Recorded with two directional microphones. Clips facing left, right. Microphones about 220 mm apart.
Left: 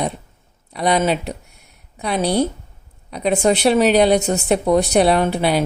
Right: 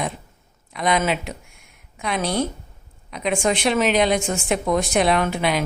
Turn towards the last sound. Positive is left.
turn(degrees=35)  # may be behind; listen again after turning